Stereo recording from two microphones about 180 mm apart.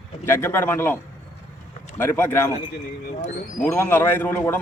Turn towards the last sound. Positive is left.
turn(degrees=10)  # may be behind; listen again after turning